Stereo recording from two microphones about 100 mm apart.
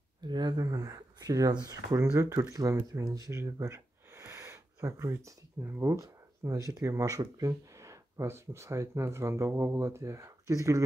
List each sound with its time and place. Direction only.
0.3 s speech: 45° right (ahead or behind); by 10.8 s 30° right (ahead or behind)